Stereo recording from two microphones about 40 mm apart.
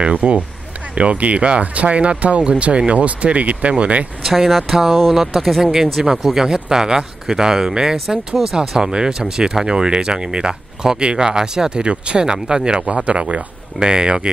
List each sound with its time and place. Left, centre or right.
0.0 s speech: right
4.2 s speech: centre; by 14.3 s right